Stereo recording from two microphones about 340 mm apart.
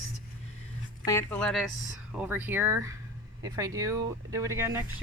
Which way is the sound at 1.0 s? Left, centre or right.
Centre.